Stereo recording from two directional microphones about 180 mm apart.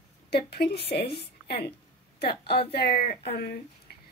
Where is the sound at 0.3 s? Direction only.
60° left (ahead or behind).